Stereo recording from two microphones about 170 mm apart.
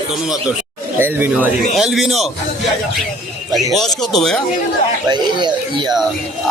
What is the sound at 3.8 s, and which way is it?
Speech, centre (ahead or behind).